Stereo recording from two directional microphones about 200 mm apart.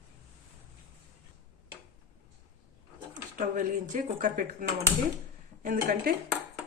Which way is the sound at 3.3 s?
40° right (ahead or behind).